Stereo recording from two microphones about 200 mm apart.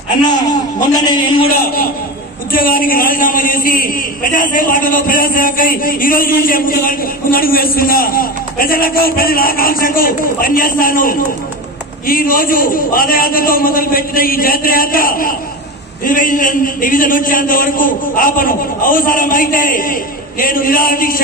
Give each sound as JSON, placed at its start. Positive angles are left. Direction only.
{"t": 0.7, "sound": "a man's voice", "side_deg": 20}
{"t": 2.5, "sound": "a man's voice", "side_deg": 45}